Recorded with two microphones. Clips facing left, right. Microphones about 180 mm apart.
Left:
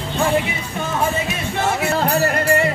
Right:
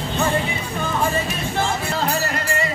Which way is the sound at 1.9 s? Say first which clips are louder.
Left 5 dB; 50° left (ahead or behind).